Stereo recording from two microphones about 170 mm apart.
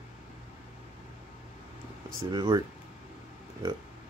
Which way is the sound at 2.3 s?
25° right (ahead or behind).